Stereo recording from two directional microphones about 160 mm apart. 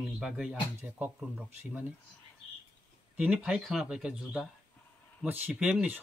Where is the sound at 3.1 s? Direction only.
5° right (ahead or behind).